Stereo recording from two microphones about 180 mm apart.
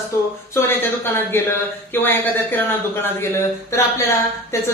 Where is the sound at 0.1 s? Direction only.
15° left (ahead or behind).